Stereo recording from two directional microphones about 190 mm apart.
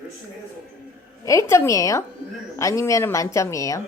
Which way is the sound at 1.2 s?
15° left (ahead or behind).